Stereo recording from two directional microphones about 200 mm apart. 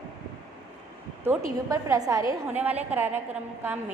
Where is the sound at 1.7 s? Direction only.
15° right (ahead or behind).